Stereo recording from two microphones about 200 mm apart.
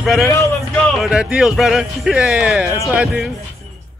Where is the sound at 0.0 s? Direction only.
Centre (ahead or behind).